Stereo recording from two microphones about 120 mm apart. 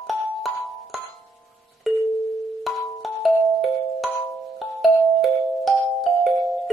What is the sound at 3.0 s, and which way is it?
Music, centre (ahead or behind).